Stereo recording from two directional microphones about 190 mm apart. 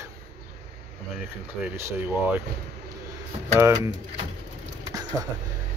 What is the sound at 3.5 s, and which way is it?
Speech, 15° right (ahead or behind).